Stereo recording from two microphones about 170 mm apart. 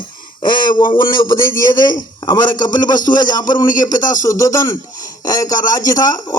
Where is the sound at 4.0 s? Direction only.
50° left (ahead or behind).